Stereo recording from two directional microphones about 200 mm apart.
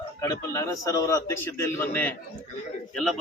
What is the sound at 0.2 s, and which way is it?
A man's voice, 15° left (ahead or behind).